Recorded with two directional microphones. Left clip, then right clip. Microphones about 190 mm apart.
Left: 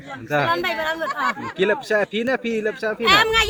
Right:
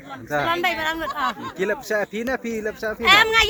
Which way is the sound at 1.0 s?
90° right.